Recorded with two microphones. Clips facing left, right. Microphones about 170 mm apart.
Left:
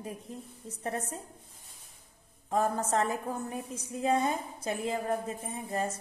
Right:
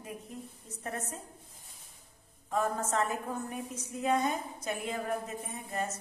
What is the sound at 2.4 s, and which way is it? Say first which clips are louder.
A woman's voice: left 2 dB; 35° left (ahead or behind).